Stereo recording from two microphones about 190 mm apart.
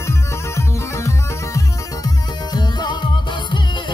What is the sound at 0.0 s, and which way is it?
Music, 15° left (ahead or behind).